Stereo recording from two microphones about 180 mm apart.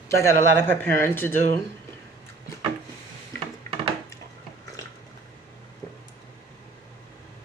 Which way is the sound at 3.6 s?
45° right (ahead or behind).